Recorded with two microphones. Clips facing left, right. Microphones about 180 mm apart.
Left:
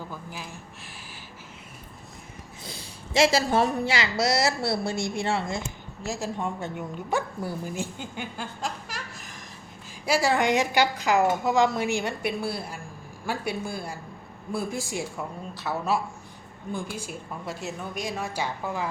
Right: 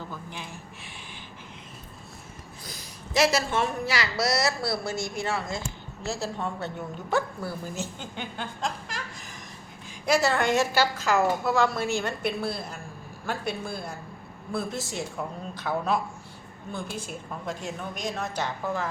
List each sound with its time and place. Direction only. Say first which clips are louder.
0.1 s a sound: even; 5° left (ahead or behind)
2.6 s a woman's voice: left 2 dB; 30° left (ahead or behind)
6.0 s a woman's voice: left 1 dB; 15° left (ahead or behind)